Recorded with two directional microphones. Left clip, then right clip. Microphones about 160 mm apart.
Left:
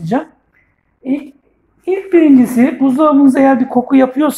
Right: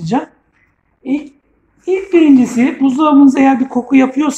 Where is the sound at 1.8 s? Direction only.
40° left (ahead or behind).